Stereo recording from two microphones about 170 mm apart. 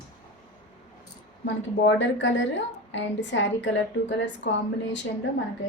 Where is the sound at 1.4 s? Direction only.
90° left.